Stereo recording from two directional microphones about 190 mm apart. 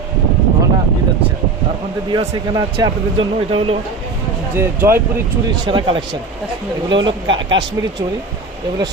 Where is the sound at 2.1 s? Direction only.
25° right (ahead or behind).